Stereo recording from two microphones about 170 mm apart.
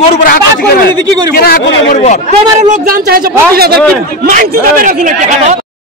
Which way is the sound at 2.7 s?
60° right (ahead or behind).